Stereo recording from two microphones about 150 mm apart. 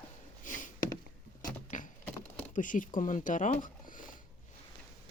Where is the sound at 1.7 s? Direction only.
55° left (ahead or behind).